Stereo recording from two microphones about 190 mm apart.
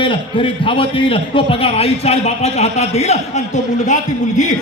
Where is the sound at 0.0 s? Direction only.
25° left (ahead or behind).